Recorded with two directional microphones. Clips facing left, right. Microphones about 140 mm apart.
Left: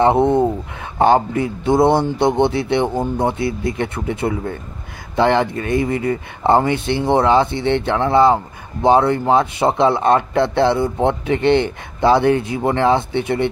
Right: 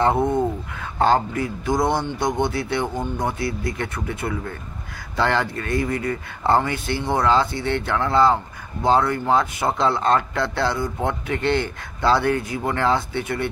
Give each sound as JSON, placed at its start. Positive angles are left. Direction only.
{"t": 0.0, "sound": "speech", "side_deg": 25}